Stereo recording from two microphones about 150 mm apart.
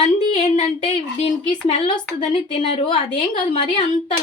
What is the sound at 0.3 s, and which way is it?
A woman's voice, 45° left (ahead or behind).